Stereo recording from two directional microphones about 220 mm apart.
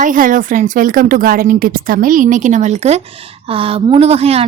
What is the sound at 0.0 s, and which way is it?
A woman's voice, 35° right (ahead or behind).